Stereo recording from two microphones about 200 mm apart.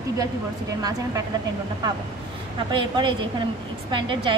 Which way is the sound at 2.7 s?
25° right (ahead or behind).